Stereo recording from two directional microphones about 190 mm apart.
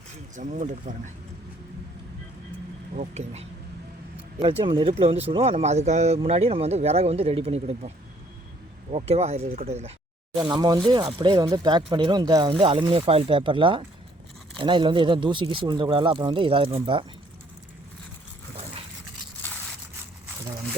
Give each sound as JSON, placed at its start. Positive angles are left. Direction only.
{"t": 0.3, "sound": "speech", "side_deg": -40}
{"t": 2.9, "sound": "speech", "side_deg": -35}
{"t": 10.3, "sound": "speech", "side_deg": -20}